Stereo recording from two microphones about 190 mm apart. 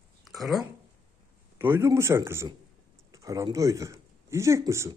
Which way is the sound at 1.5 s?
10° right (ahead or behind).